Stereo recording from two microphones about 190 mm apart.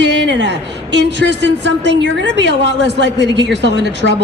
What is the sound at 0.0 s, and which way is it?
A woman's voice, 70° right (ahead or behind).